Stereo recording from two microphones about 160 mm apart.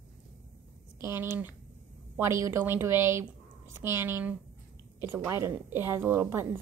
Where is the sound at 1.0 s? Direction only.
15° right (ahead or behind).